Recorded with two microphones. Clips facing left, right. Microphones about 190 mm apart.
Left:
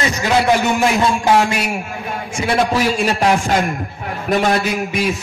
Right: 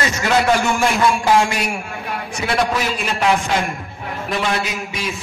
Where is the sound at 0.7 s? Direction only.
20° left (ahead or behind).